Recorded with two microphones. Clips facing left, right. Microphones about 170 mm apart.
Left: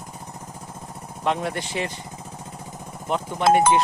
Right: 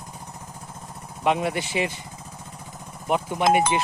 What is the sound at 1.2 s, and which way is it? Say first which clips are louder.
Speech: right 2 dB; 10° right (ahead or behind).